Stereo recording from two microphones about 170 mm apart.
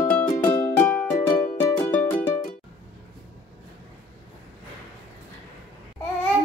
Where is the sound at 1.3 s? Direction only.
55° left (ahead or behind).